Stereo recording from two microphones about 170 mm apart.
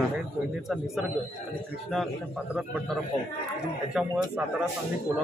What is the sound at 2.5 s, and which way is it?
Speech, centre (ahead or behind).